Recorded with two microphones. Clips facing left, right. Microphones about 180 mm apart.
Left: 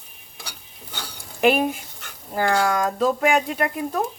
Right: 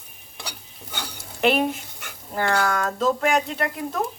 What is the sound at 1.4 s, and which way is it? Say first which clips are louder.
Speech: left 2 dB; 10° left (ahead or behind).